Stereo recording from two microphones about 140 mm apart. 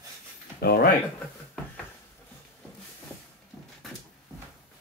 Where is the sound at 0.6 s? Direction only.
90° left.